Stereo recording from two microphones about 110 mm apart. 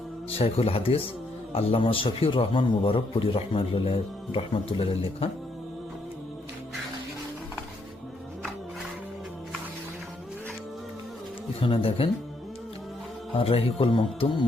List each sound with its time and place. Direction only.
0.3 s a man's voice: 60° left (ahead or behind)
11.6 s a man's voice: 60° left (ahead or behind)
13.3 s a man's voice: 60° left (ahead or behind)